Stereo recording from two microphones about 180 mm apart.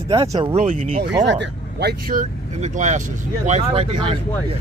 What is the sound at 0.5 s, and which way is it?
Speech, 40° right (ahead or behind).